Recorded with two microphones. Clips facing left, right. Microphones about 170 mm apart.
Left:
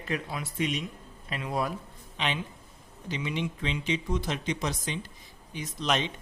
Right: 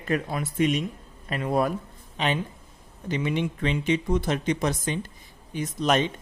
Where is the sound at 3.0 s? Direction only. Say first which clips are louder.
Right 6 dB; 55° right (ahead or behind).